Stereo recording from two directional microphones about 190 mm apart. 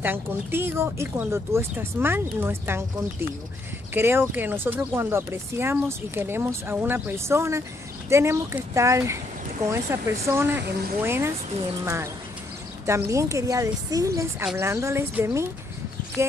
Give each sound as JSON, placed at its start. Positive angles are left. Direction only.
{"t": 0.0, "sound": "speech", "side_deg": -10}
{"t": 13.1, "sound": "speech", "side_deg": -15}